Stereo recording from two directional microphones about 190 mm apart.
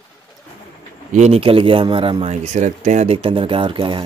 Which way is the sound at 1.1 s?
35° right (ahead or behind).